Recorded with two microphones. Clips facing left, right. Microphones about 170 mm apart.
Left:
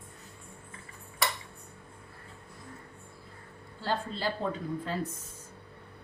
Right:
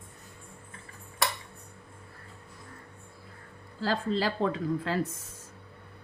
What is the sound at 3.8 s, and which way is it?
Speech, 90° right.